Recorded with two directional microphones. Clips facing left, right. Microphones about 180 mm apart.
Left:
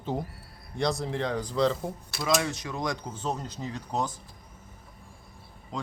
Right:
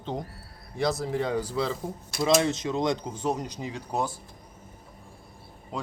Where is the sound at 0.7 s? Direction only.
Centre (ahead or behind).